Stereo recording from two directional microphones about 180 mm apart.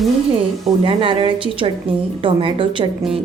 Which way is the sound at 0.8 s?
30° right (ahead or behind).